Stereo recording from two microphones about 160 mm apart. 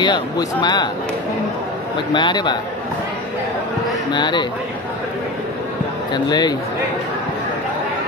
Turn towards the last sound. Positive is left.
turn(degrees=25)  # may be behind; listen again after turning